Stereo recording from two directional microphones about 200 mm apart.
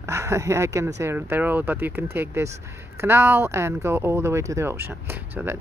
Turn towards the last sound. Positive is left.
turn(degrees=-10)  # may be behind; listen again after turning